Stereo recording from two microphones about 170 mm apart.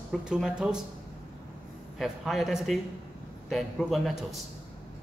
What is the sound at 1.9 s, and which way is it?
Speech, centre (ahead or behind).